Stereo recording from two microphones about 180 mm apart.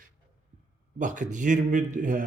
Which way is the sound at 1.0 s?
45° right (ahead or behind).